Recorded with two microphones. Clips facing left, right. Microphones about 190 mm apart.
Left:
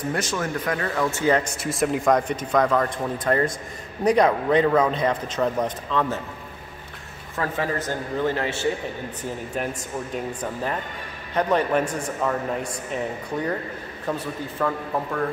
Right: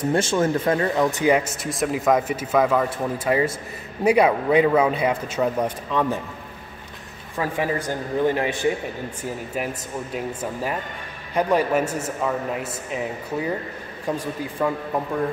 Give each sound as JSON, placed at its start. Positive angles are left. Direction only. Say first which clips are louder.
{"t": 0.1, "sound": "speech", "louder": "right 8 dB", "side_deg": -25}
{"t": 1.4, "sound": "a man's voice", "louder": "left 1 dB", "side_deg": 0}
{"t": 7.3, "sound": "a man's voice", "louder": "right 2 dB", "side_deg": -15}